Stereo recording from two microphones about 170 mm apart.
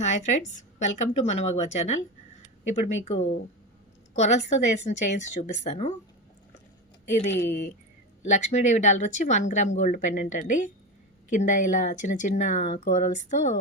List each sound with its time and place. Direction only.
0.0 s speech: 45° left (ahead or behind)
8.2 s speech: 45° left (ahead or behind)